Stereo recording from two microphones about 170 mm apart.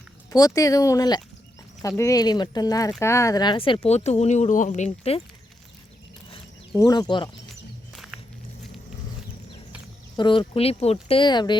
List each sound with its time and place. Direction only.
0.3 s speech: 20° left (ahead or behind)
3.8 s speech: 40° left (ahead or behind)
6.7 s speech: 20° left (ahead or behind)
7.9 s walk: centre (ahead or behind)
10.2 s speech: 30° left (ahead or behind)